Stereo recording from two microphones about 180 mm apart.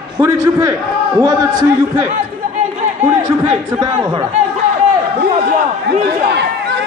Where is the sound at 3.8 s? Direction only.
25° right (ahead or behind).